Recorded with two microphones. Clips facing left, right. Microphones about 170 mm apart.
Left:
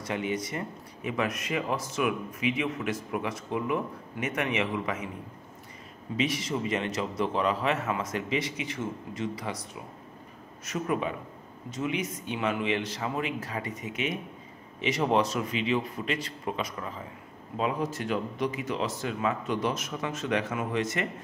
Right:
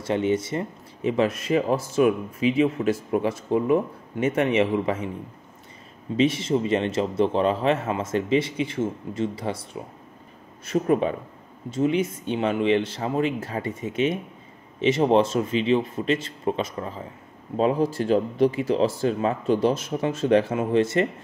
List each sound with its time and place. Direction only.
0.0 s speech: 25° right (ahead or behind)
6.1 s speech: 25° right (ahead or behind)